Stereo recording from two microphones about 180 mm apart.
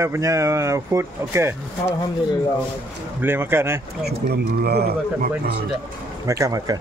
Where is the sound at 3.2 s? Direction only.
10° right (ahead or behind).